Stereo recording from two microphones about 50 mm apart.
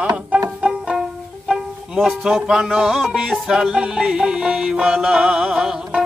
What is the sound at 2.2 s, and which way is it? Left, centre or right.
Music, centre.